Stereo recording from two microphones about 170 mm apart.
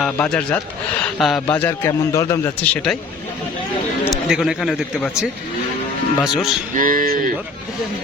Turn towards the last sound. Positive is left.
turn(degrees=-55)  # may be behind; listen again after turning